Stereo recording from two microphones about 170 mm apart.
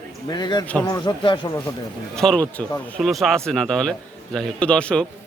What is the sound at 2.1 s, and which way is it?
A man's voice, 5° left (ahead or behind).